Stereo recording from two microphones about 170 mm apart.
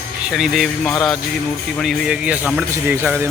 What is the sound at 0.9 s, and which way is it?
Jingle bell, 20° left (ahead or behind).